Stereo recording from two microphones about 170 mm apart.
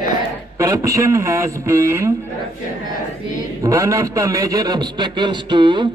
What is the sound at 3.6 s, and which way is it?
A man's voice, 20° right (ahead or behind).